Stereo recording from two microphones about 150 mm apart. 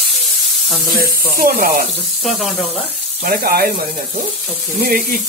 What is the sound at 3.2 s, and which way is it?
Speech, 90° right.